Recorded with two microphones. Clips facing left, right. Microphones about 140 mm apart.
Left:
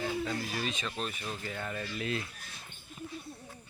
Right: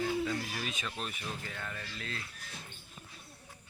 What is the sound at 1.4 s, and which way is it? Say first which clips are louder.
Speech: left 5 dB; 5° left (ahead or behind).